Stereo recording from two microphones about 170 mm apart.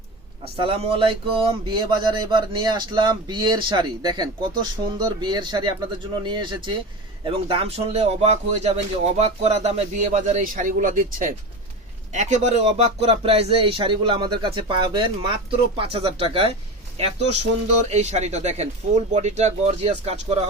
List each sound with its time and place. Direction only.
0.4 s speech: 35° right (ahead or behind)